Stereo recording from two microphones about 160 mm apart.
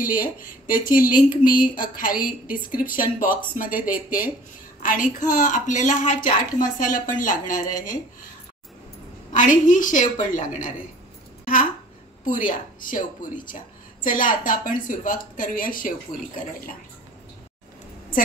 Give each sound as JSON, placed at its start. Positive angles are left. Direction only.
{"t": 0.0, "sound": "a woman's voice", "side_deg": 60}
{"t": 9.3, "sound": "a woman's voice", "side_deg": 55}
{"t": 12.3, "sound": "a woman's voice", "side_deg": 55}